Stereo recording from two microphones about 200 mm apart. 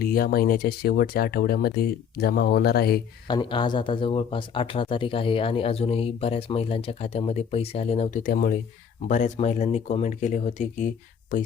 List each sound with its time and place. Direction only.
0.0 s speech: 45° left (ahead or behind)
3.2 s speech: 25° left (ahead or behind); by 11.5 s 45° left (ahead or behind)